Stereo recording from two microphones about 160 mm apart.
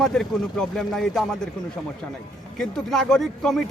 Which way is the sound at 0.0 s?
Centre (ahead or behind).